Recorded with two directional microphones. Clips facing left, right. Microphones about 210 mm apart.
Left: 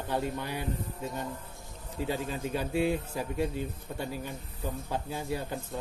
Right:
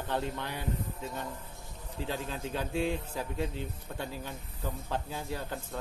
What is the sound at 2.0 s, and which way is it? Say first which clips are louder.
A man's voice: left 4 dB; 10° left (ahead or behind).